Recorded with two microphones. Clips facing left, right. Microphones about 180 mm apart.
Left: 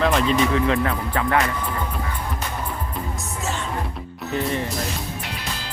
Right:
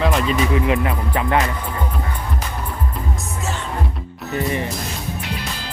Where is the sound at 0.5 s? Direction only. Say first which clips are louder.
Right 1 dB; 15° right (ahead or behind).